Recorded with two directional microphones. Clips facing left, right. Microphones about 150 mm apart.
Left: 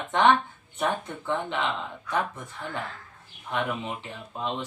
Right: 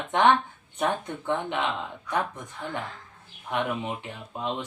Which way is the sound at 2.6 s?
15° right (ahead or behind).